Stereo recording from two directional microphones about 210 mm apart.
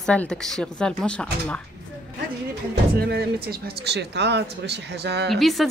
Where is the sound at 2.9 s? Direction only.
50° right (ahead or behind).